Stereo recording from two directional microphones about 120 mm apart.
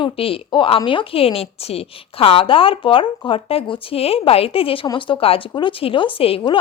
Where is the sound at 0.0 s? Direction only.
45° left (ahead or behind).